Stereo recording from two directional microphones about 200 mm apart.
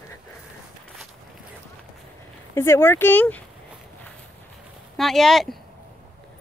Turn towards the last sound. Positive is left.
turn(degrees=0)  # may be behind; listen again after turning